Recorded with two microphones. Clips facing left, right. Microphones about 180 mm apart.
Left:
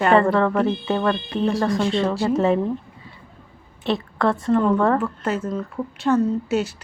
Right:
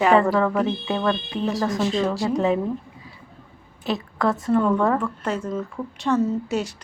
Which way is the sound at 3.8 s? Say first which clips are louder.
Left 2 dB; centre (ahead or behind).